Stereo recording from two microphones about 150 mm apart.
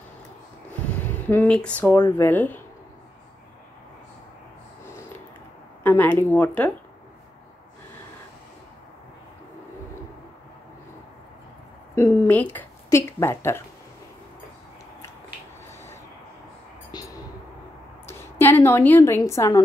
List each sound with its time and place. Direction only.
0.9 s speech: 10° left (ahead or behind)
5.9 s a woman's voice: 10° left (ahead or behind)
11.9 s a woman's voice: 15° left (ahead or behind)
16.9 s a sound: 25° left (ahead or behind)
19.3 s a woman's voice: 20° left (ahead or behind)